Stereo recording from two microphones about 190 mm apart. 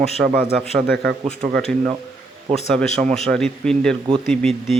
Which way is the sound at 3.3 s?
5° left (ahead or behind).